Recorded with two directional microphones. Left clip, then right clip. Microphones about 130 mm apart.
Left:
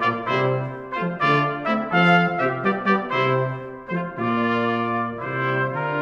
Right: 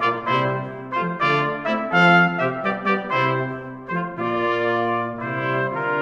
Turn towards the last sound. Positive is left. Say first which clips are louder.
# right 1 dB
turn(degrees=-20)  # may be behind; listen again after turning